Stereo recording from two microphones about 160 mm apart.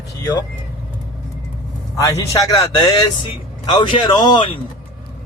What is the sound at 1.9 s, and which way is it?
Speech, 20° left (ahead or behind).